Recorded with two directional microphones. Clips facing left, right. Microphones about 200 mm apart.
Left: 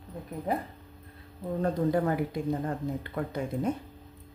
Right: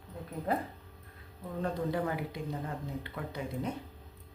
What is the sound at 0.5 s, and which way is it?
Speech, 15° left (ahead or behind).